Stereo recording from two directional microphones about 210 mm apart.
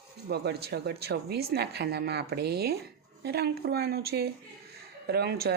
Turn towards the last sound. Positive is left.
turn(degrees=-50)  # may be behind; listen again after turning